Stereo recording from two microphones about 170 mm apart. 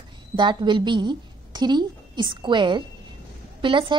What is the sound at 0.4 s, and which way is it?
A woman's voice, 30° right (ahead or behind).